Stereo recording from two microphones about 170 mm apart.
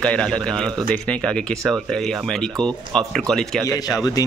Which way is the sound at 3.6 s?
20° left (ahead or behind).